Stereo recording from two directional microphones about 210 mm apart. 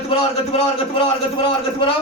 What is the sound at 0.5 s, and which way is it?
A man's voice, 25° left (ahead or behind).